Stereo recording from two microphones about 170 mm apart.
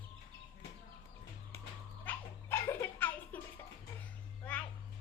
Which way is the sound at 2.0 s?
10° left (ahead or behind).